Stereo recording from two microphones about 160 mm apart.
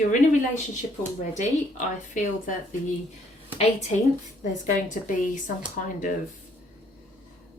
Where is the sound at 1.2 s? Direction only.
50° left (ahead or behind).